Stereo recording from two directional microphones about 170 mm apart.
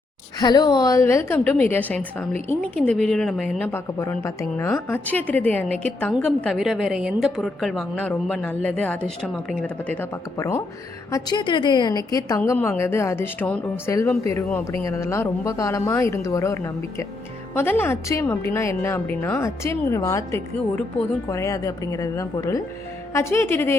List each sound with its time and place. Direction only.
0.3 s a woman's voice: 25° left (ahead or behind)
12.4 s a woman's voice: 10° left (ahead or behind)